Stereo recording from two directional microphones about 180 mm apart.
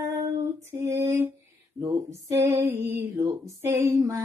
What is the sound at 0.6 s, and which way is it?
Female singing, 15° right (ahead or behind).